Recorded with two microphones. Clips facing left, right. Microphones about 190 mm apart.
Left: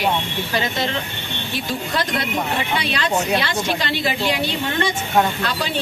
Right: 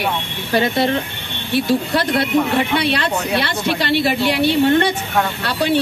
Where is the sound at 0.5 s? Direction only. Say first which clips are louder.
Right 8 dB; 60° right (ahead or behind).